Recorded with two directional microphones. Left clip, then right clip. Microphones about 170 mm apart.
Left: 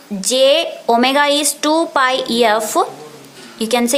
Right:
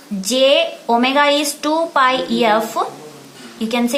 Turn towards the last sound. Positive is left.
turn(degrees=50)  # may be behind; listen again after turning